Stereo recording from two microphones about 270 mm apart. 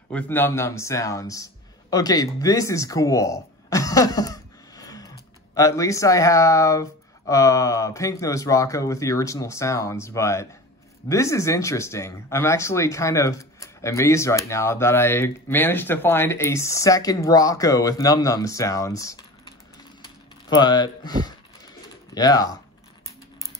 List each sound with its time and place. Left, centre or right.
0.1 s speech: centre
20.0 s typing: centre
22.1 s speech: centre